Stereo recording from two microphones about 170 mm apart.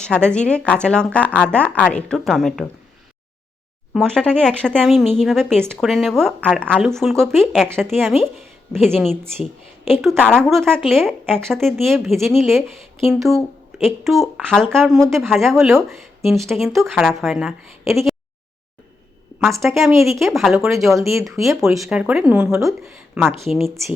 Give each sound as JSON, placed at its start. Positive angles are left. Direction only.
{"t": 0.0, "sound": "a woman's voice", "side_deg": 5}
{"t": 3.9, "sound": "speech", "side_deg": 5}
{"t": 19.6, "sound": "speech", "side_deg": -5}
{"t": 21.1, "sound": "speech", "side_deg": -15}
{"t": 21.6, "sound": "speech", "side_deg": 0}